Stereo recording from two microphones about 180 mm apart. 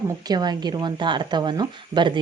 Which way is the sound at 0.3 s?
20° right (ahead or behind).